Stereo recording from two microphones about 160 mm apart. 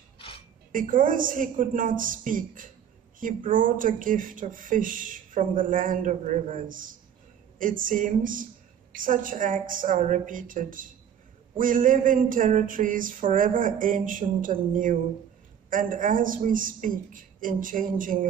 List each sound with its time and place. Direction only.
0.7 s speech: 60° right (ahead or behind)